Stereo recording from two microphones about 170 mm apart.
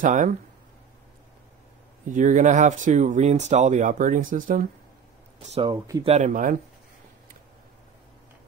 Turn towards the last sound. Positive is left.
turn(degrees=-50)  # may be behind; listen again after turning